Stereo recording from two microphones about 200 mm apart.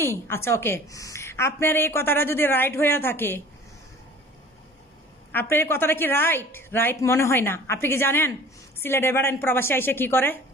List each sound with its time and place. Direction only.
0.0 s a woman's voice: 10° left (ahead or behind)
5.3 s a woman's voice: 10° left (ahead or behind)